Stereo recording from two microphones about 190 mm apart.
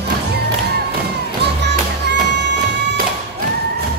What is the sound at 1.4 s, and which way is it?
Music, 65° right (ahead or behind).